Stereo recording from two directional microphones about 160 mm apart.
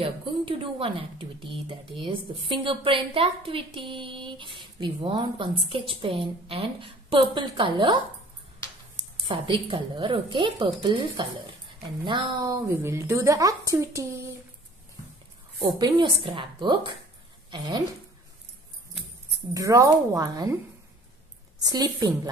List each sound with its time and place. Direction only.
0.0 s speech: 35° right (ahead or behind)
9.3 s a woman's voice: 30° right (ahead or behind)
15.8 s a woman's voice: 30° right (ahead or behind)
19.5 s a woman's voice: 20° right (ahead or behind)
21.6 s a woman's voice: 25° right (ahead or behind)